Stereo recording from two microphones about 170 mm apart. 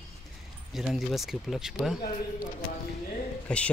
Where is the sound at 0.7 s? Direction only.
Centre (ahead or behind).